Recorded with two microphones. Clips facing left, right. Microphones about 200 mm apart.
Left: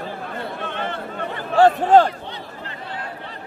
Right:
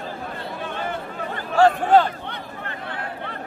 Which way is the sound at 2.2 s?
55° right (ahead or behind).